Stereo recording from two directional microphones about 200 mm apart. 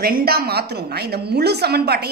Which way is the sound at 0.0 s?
50° right (ahead or behind).